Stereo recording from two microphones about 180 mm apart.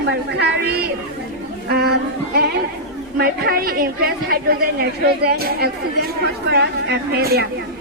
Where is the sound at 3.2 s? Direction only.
55° right (ahead or behind).